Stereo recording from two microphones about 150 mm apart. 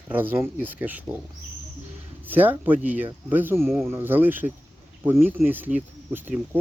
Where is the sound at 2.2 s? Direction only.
10° right (ahead or behind).